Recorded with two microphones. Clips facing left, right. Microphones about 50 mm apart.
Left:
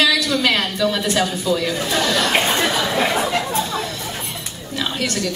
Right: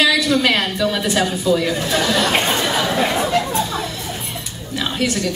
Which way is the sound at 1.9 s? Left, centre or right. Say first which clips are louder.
Even; centre.